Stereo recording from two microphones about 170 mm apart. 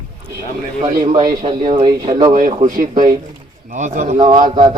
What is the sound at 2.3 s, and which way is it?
Speech, 55° right (ahead or behind).